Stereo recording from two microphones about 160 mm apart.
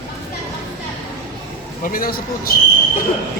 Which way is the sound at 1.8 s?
60° left (ahead or behind).